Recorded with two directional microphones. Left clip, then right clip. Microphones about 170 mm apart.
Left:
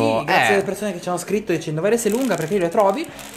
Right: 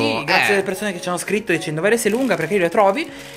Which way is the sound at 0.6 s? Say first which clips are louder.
Right 1 dB; 10° right (ahead or behind).